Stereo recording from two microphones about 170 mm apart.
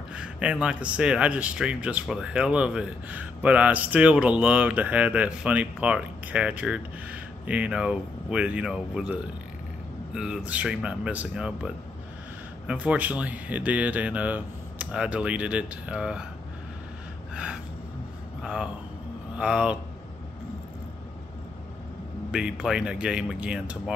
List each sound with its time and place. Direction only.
0.1 s speech: 5° right (ahead or behind)
18.4 s a man's voice: 5° right (ahead or behind)
22.3 s speech: 5° right (ahead or behind)